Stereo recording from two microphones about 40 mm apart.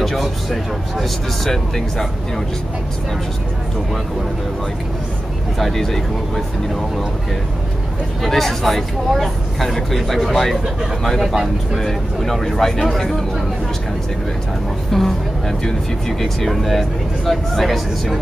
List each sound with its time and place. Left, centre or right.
0.0 s speech: centre
5.6 s speech: centre
8.2 s speech: centre
14.9 s speech: centre